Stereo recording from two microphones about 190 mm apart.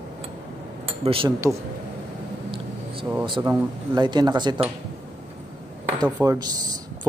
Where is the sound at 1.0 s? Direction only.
30° right (ahead or behind).